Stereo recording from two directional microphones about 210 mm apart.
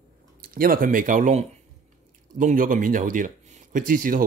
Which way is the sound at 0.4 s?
45° right (ahead or behind).